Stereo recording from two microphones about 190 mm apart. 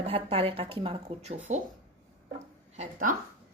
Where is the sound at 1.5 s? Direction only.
40° right (ahead or behind).